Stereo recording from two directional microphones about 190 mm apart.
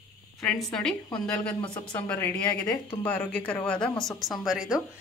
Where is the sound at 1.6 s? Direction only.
25° left (ahead or behind).